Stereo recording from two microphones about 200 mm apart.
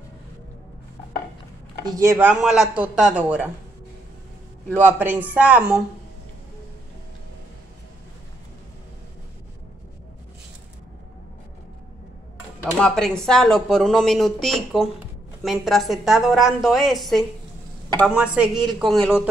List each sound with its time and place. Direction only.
1.9 s speech: 15° right (ahead or behind)
4.8 s speech: 10° right (ahead or behind)
12.7 s speech: 5° left (ahead or behind)